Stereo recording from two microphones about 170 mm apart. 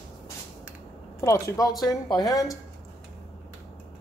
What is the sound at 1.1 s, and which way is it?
Speech, 20° left (ahead or behind).